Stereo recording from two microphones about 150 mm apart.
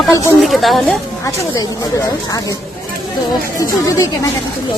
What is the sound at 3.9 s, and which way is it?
Speech, 20° left (ahead or behind).